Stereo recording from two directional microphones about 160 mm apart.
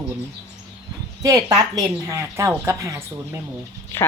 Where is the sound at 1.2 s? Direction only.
20° right (ahead or behind).